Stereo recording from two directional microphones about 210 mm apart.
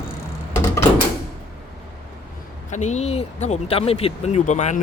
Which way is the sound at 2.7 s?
35° left (ahead or behind).